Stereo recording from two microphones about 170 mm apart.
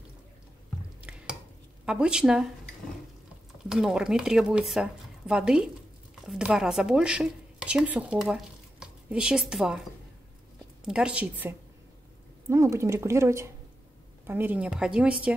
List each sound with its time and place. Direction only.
1.1 s dishes: 5° right (ahead or behind)
1.9 s speech: 5° right (ahead or behind)
3.6 s speech: 5° right (ahead or behind)
10.8 s a woman's voice: 5° right (ahead or behind)